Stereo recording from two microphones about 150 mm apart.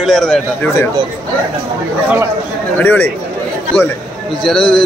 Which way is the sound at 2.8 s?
10° left (ahead or behind).